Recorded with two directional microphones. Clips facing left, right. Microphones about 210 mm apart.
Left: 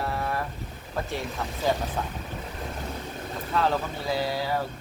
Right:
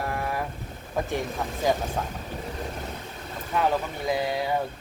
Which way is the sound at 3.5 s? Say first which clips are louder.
Right 1 dB; 15° right (ahead or behind).